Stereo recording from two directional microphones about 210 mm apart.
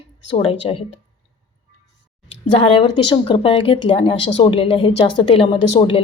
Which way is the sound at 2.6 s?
25° left (ahead or behind).